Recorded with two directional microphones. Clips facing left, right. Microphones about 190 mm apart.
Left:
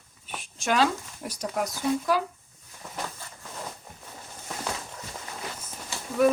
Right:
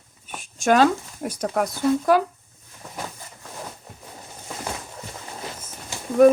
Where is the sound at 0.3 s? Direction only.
45° right (ahead or behind).